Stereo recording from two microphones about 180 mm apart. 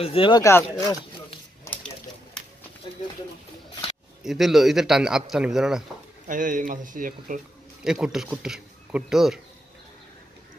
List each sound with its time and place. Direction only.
0.0 s speech: 30° left (ahead or behind)
0.4 s speech: 15° left (ahead or behind)
1.6 s a sound: 10° left (ahead or behind)
4.2 s speech: centre (ahead or behind)
6.2 s speech: 45° right (ahead or behind)
7.8 s speech: 5° right (ahead or behind)